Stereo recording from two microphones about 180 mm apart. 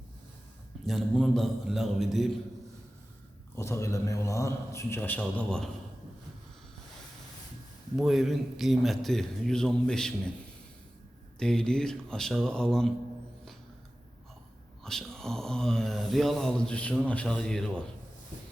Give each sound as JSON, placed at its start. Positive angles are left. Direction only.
{"t": 0.9, "sound": "speech", "side_deg": 0}
{"t": 3.5, "sound": "a man's voice", "side_deg": 15}
{"t": 7.9, "sound": "speech", "side_deg": 0}
{"t": 11.3, "sound": "speech", "side_deg": 5}
{"t": 14.8, "sound": "speech", "side_deg": 5}